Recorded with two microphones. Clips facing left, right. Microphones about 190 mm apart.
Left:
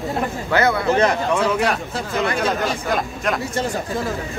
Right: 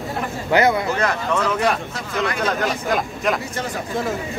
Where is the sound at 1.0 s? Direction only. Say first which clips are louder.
Left 3 dB; 20° left (ahead or behind).